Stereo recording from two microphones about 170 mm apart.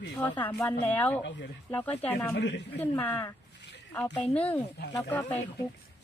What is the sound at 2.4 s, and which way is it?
Speech, 90° left.